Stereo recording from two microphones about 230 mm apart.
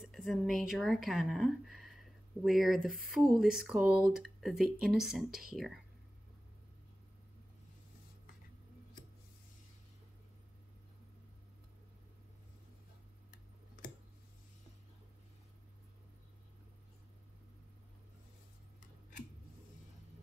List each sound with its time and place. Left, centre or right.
0.0 s speech: centre